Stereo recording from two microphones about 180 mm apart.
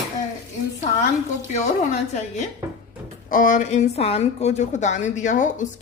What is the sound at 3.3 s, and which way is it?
A woman's voice, 50° left (ahead or behind).